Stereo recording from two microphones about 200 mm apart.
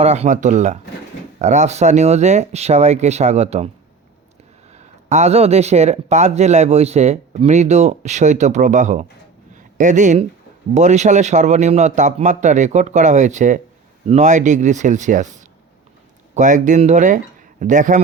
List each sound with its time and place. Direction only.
0.0 s speech: 30° right (ahead or behind)
5.0 s speech: 35° right (ahead or behind)
16.3 s speech: 40° right (ahead or behind)